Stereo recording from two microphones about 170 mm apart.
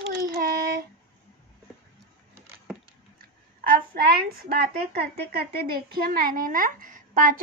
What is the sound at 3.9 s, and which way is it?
A woman's voice, 65° right (ahead or behind).